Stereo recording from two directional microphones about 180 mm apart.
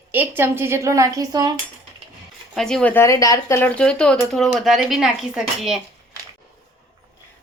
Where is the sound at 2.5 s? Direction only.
Centre (ahead or behind).